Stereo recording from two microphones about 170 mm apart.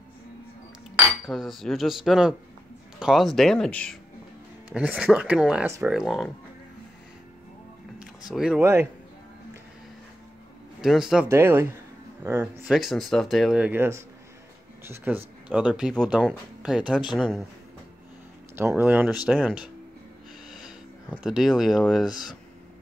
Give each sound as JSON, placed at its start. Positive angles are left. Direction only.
{"t": 0.9, "sound": "cutlery", "side_deg": 0}
{"t": 3.0, "sound": "speech", "side_deg": 0}
{"t": 4.6, "sound": "speech", "side_deg": -5}
{"t": 8.4, "sound": "speech", "side_deg": -5}
{"t": 10.8, "sound": "speech", "side_deg": 0}
{"t": 11.2, "sound": "speech", "side_deg": -15}
{"t": 12.7, "sound": "speech", "side_deg": 0}
{"t": 18.7, "sound": "speech", "side_deg": -10}
{"t": 20.4, "sound": "snort", "side_deg": 0}
{"t": 21.2, "sound": "speech", "side_deg": 0}
{"t": 22.1, "sound": "speech", "side_deg": 25}